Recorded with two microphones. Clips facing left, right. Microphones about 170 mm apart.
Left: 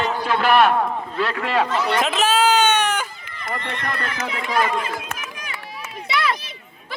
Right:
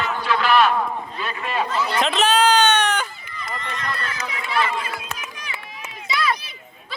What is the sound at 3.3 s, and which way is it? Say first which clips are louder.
Speech: left 2 dB; 55° left (ahead or behind).